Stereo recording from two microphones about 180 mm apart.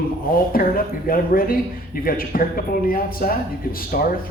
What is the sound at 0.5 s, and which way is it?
A woman's voice, 55° left (ahead or behind).